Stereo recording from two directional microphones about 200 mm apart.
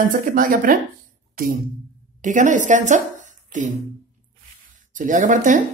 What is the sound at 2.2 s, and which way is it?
A woman's voice, 40° right (ahead or behind).